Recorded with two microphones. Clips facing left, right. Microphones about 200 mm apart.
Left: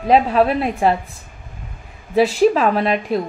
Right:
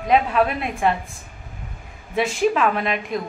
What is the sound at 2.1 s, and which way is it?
A woman's voice, 35° left (ahead or behind).